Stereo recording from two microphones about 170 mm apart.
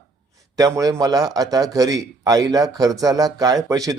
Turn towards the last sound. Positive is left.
turn(degrees=-20)  # may be behind; listen again after turning